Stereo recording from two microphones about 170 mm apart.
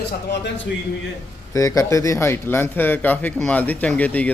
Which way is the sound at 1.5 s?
20° left (ahead or behind).